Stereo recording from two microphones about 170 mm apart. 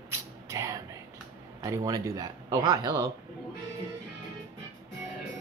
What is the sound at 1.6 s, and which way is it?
Speech, 20° right (ahead or behind).